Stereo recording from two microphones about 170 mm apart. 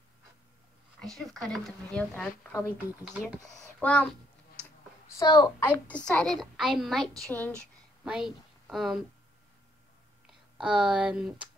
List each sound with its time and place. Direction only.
1.0 s a woman's voice: centre (ahead or behind); by 3.4 s 20° left (ahead or behind)
3.6 s speech: 10° left (ahead or behind)
5.2 s a woman's voice: 20° left (ahead or behind); by 9.0 s centre (ahead or behind)
10.6 s a woman's voice: 5° right (ahead or behind)